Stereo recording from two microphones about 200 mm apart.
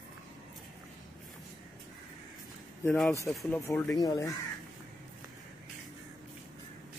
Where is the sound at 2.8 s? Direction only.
10° left (ahead or behind).